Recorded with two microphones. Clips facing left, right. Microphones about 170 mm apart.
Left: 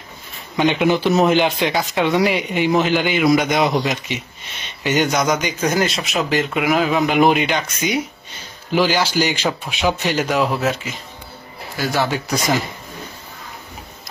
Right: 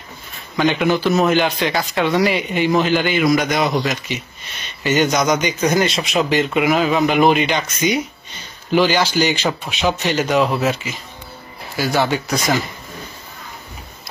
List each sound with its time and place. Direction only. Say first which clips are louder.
0.6 s a man's voice: even; 20° left (ahead or behind)
1.6 s a man's voice: even; 5° left (ahead or behind)
11.7 s a man's voice: right 2 dB; centre (ahead or behind)